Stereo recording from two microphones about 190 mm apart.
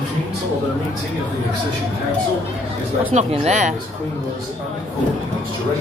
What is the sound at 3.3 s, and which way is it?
Speech, 35° right (ahead or behind).